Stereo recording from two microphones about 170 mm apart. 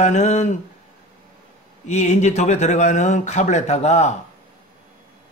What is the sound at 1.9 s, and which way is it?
Speech, 40° left (ahead or behind).